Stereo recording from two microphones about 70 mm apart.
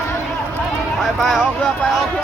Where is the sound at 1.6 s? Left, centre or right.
Centre.